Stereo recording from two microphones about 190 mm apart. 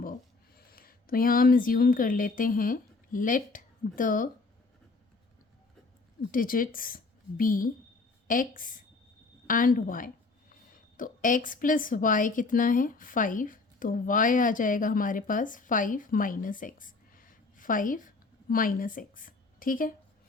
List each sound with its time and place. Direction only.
0.5 s speech: 50° left (ahead or behind)
6.3 s a woman's voice: 45° left (ahead or behind)